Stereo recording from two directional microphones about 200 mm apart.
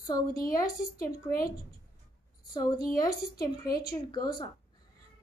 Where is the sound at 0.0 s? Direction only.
15° left (ahead or behind).